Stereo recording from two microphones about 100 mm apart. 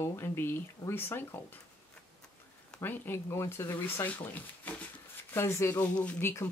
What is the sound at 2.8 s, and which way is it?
Speech, 20° left (ahead or behind).